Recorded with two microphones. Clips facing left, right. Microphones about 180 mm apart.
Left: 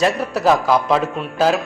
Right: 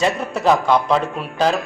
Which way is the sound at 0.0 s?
Centre (ahead or behind).